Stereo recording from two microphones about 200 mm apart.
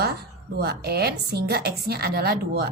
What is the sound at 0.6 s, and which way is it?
A woman's voice, 50° right (ahead or behind).